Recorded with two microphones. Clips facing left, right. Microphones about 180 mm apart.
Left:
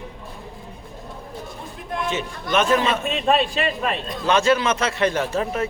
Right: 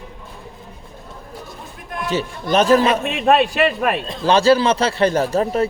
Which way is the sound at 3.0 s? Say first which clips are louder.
Right 4 dB; 60° right (ahead or behind).